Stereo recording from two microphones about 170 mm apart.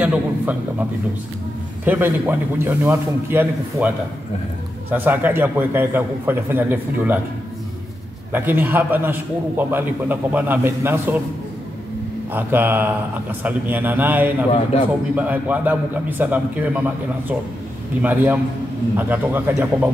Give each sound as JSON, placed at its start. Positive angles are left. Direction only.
{"t": 0.0, "sound": "a man's voice", "side_deg": -10}
{"t": 1.9, "sound": "a man's voice", "side_deg": -10}
{"t": 4.9, "sound": "a man's voice", "side_deg": -10}
{"t": 8.3, "sound": "a man's voice", "side_deg": -10}
{"t": 12.3, "sound": "a man's voice", "side_deg": -10}
{"t": 14.5, "sound": "a man's voice", "side_deg": 35}
{"t": 15.1, "sound": "a man's voice", "side_deg": -10}
{"t": 18.0, "sound": "a man's voice", "side_deg": -10}